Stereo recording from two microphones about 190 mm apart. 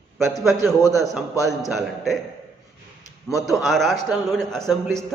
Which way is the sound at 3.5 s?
Centre (ahead or behind).